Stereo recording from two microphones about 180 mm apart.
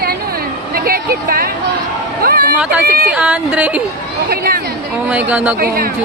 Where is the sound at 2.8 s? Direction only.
60° right (ahead or behind).